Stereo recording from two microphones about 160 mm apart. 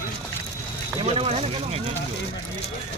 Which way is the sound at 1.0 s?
40° right (ahead or behind).